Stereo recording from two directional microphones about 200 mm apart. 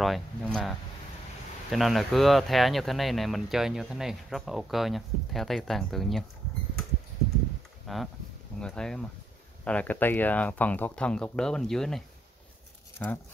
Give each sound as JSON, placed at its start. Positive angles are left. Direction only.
{"t": 0.0, "sound": "speech", "side_deg": 0}
{"t": 7.8, "sound": "a sound", "side_deg": 0}
{"t": 8.5, "sound": "speech", "side_deg": 5}